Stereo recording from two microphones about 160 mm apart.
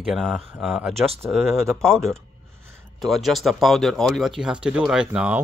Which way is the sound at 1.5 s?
15° right (ahead or behind).